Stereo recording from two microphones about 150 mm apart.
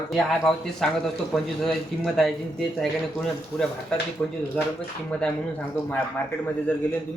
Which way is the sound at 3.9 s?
5° left (ahead or behind).